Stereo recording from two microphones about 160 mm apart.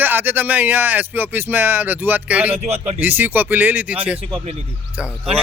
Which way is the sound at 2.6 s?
40° right (ahead or behind).